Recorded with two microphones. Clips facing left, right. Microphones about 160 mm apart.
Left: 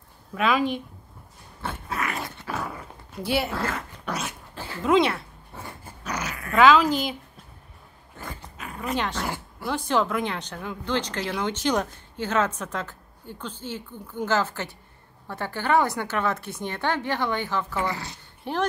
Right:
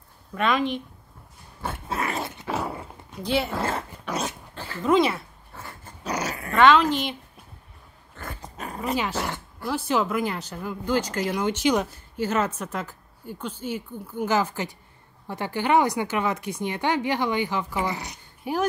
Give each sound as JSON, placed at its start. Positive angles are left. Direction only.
{"t": 0.3, "sound": "a woman's voice", "side_deg": 5}
{"t": 1.9, "sound": "dog", "side_deg": -30}
{"t": 3.1, "sound": "speech", "side_deg": 5}
{"t": 3.5, "sound": "speech", "side_deg": -25}
{"t": 4.1, "sound": "dog", "side_deg": -25}
{"t": 4.6, "sound": "speech", "side_deg": 0}
{"t": 6.0, "sound": "dog", "side_deg": -30}
{"t": 6.5, "sound": "a woman's voice", "side_deg": 0}
{"t": 8.5, "sound": "dog", "side_deg": -40}
{"t": 8.9, "sound": "speech", "side_deg": -5}